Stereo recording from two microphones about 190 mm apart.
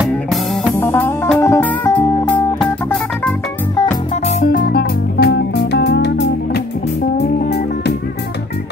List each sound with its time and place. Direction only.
0.0 s music: centre (ahead or behind)
0.7 s music: 10° left (ahead or behind)
4.1 s music: 35° left (ahead or behind)
4.5 s music: 50° left (ahead or behind)